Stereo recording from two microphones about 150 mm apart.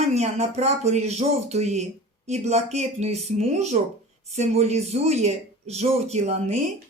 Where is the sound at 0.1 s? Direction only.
45° right (ahead or behind).